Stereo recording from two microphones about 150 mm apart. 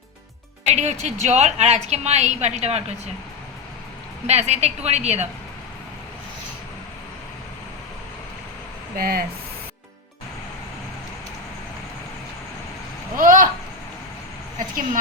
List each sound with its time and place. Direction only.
0.7 s a woman's voice: 50° right (ahead or behind)
4.3 s a woman's voice: 45° right (ahead or behind)
9.0 s speech: 80° right
13.1 s speech: 65° right (ahead or behind)